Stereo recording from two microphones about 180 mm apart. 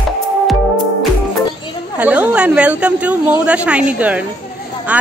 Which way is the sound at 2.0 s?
10° right (ahead or behind).